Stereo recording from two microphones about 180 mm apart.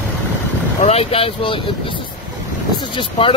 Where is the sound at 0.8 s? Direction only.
35° left (ahead or behind).